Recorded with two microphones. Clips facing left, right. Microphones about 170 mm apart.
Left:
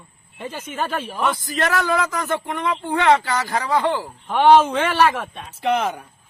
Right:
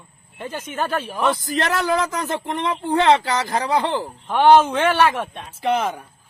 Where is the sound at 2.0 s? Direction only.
25° right (ahead or behind).